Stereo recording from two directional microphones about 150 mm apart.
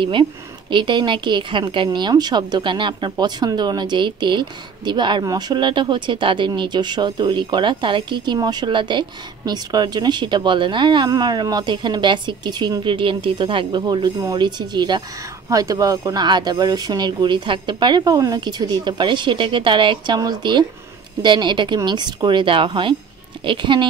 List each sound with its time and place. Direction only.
0.0 s a woman's voice: 35° right (ahead or behind)